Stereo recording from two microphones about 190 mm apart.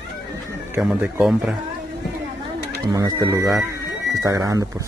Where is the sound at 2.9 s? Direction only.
20° right (ahead or behind).